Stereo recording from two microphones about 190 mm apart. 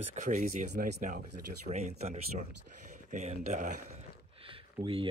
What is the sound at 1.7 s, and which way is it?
Speech, 40° right (ahead or behind).